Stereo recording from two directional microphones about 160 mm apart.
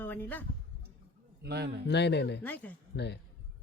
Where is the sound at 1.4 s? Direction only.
90° right.